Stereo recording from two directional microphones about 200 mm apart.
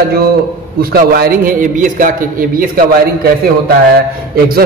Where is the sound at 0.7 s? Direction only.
50° right (ahead or behind).